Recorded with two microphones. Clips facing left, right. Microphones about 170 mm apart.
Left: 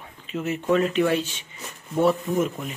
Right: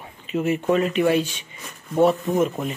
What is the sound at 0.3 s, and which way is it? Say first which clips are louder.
Speech: right 2 dB; 10° right (ahead or behind).